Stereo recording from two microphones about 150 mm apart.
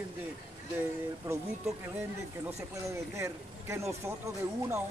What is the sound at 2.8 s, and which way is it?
Speech, 20° right (ahead or behind).